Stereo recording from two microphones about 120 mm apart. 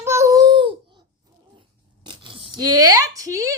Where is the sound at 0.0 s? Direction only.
20° right (ahead or behind).